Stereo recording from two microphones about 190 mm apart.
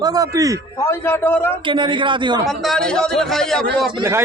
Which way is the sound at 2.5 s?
Centre (ahead or behind).